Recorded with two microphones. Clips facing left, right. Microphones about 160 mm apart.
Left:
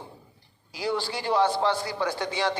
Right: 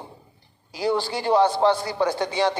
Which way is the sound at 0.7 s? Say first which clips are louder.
Right 5 dB; 35° right (ahead or behind).